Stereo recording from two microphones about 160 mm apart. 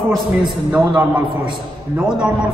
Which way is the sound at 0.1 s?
5° right (ahead or behind).